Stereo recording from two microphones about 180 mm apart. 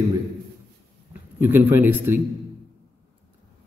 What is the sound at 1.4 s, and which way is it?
Speech, 10° right (ahead or behind).